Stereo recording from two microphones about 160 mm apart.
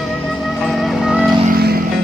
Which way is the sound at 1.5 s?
75° right (ahead or behind).